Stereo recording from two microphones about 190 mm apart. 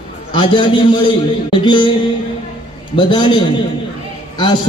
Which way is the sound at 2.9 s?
25° left (ahead or behind).